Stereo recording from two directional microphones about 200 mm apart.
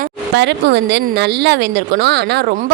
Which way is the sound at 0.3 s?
60° right (ahead or behind).